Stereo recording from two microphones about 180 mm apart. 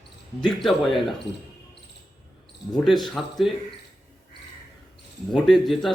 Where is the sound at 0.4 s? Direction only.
Centre (ahead or behind).